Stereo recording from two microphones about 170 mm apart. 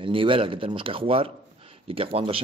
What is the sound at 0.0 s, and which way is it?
A man's voice, 30° right (ahead or behind).